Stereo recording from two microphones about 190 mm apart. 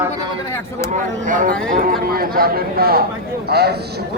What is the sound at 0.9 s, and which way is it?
A man's voice, 45° right (ahead or behind).